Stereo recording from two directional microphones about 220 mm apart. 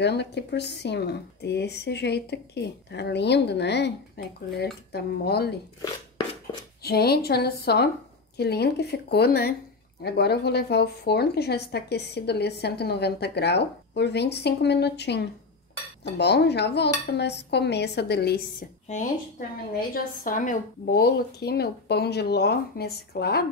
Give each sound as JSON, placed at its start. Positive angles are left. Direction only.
{"t": 0.0, "sound": "a woman's voice", "side_deg": 50}
{"t": 4.2, "sound": "cutlery", "side_deg": 45}
{"t": 4.9, "sound": "a woman's voice", "side_deg": 45}
{"t": 6.8, "sound": "a woman's voice", "side_deg": 45}